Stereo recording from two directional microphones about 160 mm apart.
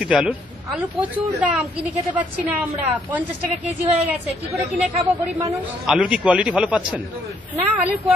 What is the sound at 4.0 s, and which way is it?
A woman's voice, 40° right (ahead or behind).